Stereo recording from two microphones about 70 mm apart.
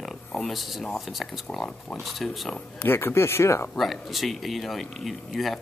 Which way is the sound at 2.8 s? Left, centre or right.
Left.